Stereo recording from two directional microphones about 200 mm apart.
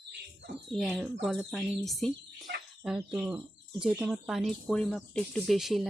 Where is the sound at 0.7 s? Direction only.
Centre (ahead or behind).